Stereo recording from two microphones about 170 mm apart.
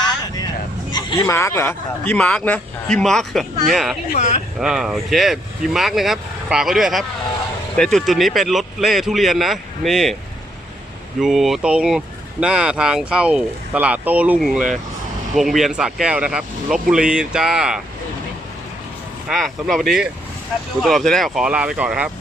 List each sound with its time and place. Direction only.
0.0 s speech: 25° left (ahead or behind); by 3.9 s centre (ahead or behind)
4.1 s speech: 40° left (ahead or behind)
4.6 s speech: centre (ahead or behind)
11.2 s speech: centre (ahead or behind)
19.3 s speech: centre (ahead or behind)